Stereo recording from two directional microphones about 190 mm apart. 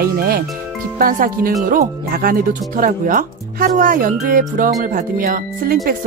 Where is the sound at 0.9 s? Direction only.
50° right (ahead or behind).